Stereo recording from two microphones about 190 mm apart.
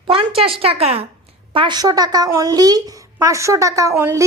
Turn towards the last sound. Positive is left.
turn(degrees=-15)  # may be behind; listen again after turning